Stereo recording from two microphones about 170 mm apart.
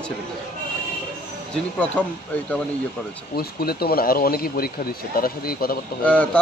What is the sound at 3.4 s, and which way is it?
Speech, 65° left (ahead or behind).